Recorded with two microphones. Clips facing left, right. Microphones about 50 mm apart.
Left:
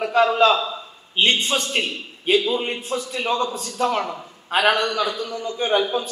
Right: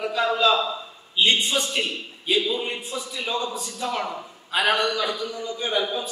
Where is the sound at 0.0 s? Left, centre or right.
Left.